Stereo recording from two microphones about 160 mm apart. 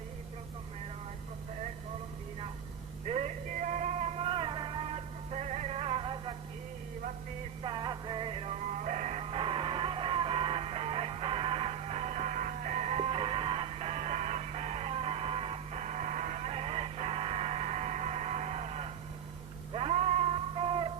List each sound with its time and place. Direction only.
3.1 s music: 50° right (ahead or behind); by 6.3 s 30° right (ahead or behind)
7.6 s music: 30° right (ahead or behind)